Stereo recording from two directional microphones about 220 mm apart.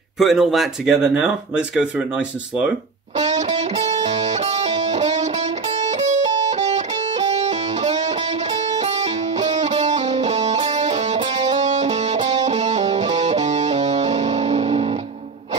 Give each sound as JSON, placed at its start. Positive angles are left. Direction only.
{"t": 0.2, "sound": "speech", "side_deg": 0}
{"t": 3.2, "sound": "music", "side_deg": -30}